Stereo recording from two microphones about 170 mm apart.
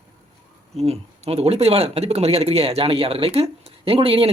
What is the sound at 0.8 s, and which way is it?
Speech, 35° right (ahead or behind).